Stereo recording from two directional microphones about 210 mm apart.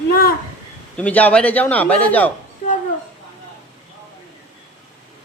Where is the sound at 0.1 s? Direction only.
45° left (ahead or behind).